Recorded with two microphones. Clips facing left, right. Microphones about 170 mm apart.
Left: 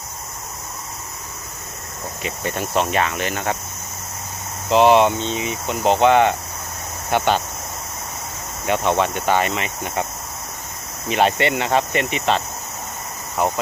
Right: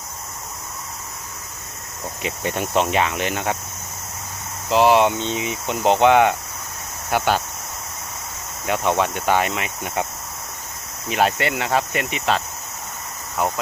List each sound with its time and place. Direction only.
2.2 s cricket: 20° right (ahead or behind)
4.7 s cricket: 5° right (ahead or behind)
5.2 s cricket: 15° right (ahead or behind)
8.6 s cricket: 5° right (ahead or behind)
11.1 s cricket: 5° right (ahead or behind)